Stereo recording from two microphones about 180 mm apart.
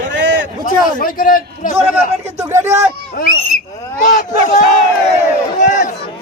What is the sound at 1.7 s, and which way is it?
A man's voice, 15° right (ahead or behind).